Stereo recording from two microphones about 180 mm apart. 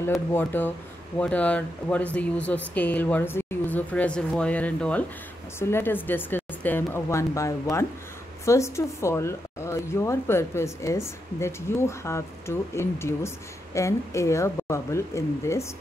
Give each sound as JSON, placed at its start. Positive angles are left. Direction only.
{"t": 0.3, "sound": "a woman's voice", "side_deg": 10}